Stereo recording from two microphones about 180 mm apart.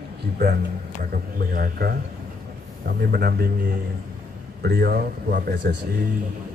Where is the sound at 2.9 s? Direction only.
55° right (ahead or behind).